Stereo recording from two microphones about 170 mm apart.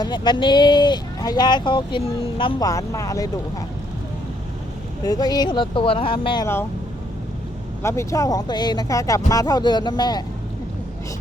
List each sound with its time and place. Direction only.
0.0 s speech: 25° left (ahead or behind)
5.0 s speech: 20° left (ahead or behind)
7.8 s speech: 15° left (ahead or behind)